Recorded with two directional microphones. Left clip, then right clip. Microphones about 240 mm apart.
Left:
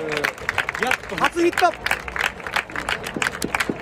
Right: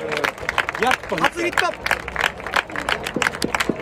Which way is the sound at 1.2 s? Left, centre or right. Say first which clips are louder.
Left 3 dB; centre.